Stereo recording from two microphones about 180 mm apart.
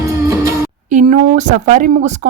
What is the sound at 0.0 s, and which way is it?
Music, 15° right (ahead or behind).